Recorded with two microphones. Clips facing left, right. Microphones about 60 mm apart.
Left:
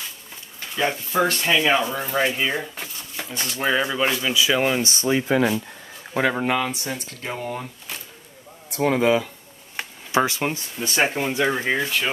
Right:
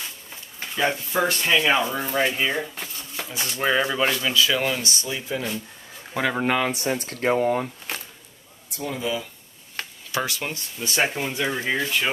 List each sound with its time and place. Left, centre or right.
1.2 s speech: centre
1.6 s speech: centre
2.7 s a sound: centre
3.3 s speech: centre
4.1 s speech: centre; by 5.3 s left
5.3 s speech: left
6.3 s speech: centre
6.7 s speech: right
8.6 s speech: left
9.8 s a sound: centre
10.1 s speech: left
10.8 s speech: centre